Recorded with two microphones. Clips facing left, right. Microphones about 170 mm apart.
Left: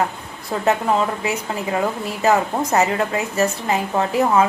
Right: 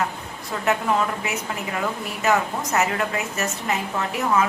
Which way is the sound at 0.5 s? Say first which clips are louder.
Left 6 dB; 30° left (ahead or behind).